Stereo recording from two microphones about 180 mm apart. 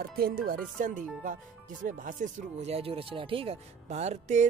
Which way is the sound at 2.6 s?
35° right (ahead or behind).